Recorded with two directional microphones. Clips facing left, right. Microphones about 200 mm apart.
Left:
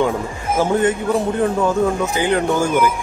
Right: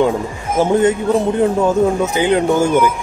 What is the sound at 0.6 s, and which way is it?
Speech, 20° right (ahead or behind).